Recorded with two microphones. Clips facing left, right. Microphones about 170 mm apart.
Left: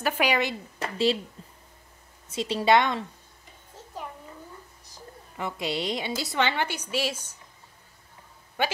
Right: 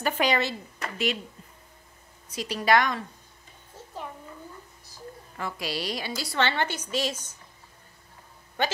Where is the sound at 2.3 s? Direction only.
25° left (ahead or behind).